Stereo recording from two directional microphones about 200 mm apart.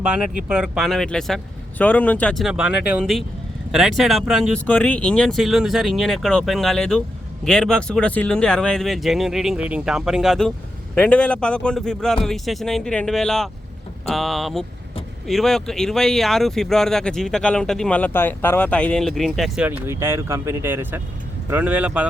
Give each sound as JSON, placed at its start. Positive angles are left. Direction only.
{"t": 0.4, "sound": "speech", "side_deg": -5}